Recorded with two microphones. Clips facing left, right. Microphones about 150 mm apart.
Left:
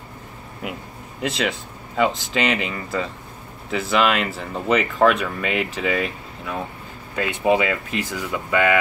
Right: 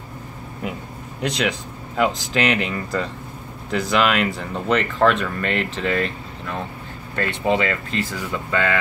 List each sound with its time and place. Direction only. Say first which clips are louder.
1.2 s speech: right 1 dB; centre (ahead or behind)